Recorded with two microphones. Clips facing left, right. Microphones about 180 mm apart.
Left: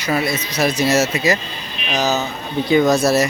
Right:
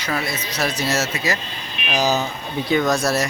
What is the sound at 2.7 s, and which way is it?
Speech, 5° left (ahead or behind).